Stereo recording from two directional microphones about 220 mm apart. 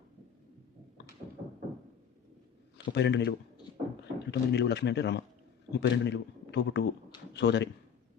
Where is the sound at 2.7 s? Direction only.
50° left (ahead or behind).